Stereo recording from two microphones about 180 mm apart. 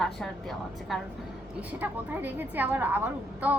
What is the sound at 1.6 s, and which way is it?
A woman's voice, 10° right (ahead or behind).